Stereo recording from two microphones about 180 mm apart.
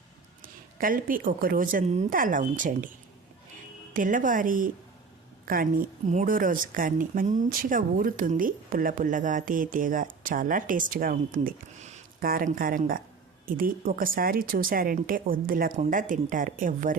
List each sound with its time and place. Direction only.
0.8 s a woman's voice: 50° right (ahead or behind)
3.9 s a woman's voice: 45° right (ahead or behind)